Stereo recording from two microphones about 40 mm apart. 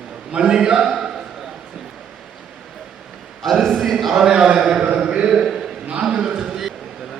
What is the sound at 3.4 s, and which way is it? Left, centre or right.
Speech, centre.